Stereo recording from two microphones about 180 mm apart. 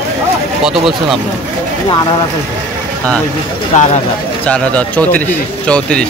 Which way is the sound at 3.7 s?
40° left (ahead or behind).